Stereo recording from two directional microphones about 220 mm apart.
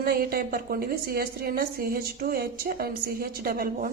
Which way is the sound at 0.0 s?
40° right (ahead or behind).